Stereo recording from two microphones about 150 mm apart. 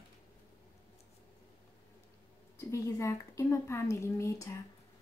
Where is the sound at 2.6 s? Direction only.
20° left (ahead or behind).